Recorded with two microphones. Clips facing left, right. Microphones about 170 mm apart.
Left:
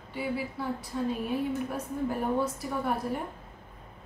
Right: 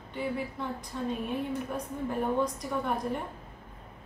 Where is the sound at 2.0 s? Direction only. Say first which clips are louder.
Even; 5° left (ahead or behind).